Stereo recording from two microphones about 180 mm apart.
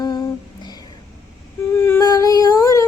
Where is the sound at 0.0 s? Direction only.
25° left (ahead or behind).